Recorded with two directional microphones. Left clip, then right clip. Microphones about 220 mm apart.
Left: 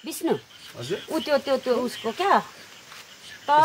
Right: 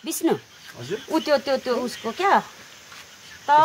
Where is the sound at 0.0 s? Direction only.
40° right (ahead or behind).